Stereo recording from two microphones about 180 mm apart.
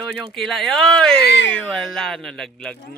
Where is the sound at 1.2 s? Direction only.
70° left (ahead or behind).